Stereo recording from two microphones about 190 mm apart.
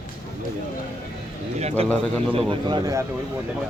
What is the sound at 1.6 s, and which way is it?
Speech, 35° right (ahead or behind).